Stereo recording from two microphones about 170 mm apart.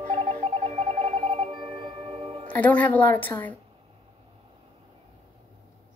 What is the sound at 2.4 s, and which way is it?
Speech, 10° left (ahead or behind).